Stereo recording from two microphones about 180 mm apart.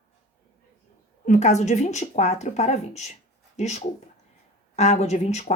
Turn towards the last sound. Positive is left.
turn(degrees=40)  # may be behind; listen again after turning